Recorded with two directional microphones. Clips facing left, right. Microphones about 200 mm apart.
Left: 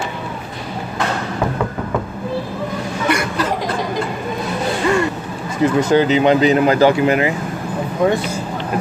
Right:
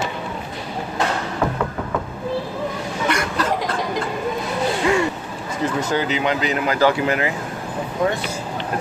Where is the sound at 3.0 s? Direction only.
10° left (ahead or behind).